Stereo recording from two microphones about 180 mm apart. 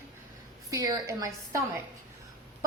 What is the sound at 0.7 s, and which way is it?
Speech, 20° right (ahead or behind).